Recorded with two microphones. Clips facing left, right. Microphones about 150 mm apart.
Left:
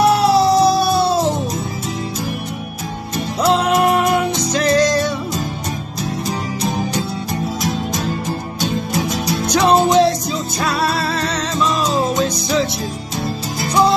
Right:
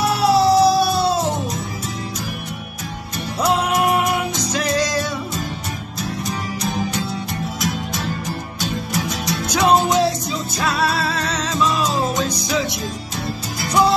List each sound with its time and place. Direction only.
0.0 s music: centre (ahead or behind)
3.4 s music: 5° right (ahead or behind)
8.5 s music: 25° left (ahead or behind)
9.5 s music: 5° right (ahead or behind)